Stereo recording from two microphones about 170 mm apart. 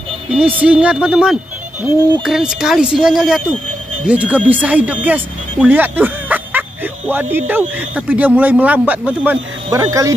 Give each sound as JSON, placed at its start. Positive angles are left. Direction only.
{"t": 0.6, "sound": "speech", "side_deg": -5}